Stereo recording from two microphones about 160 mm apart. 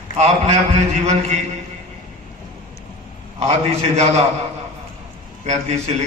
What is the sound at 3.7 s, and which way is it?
Speech, 40° right (ahead or behind).